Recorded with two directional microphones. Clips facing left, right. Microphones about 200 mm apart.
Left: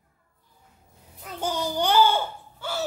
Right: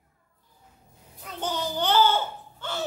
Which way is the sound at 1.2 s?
10° left (ahead or behind).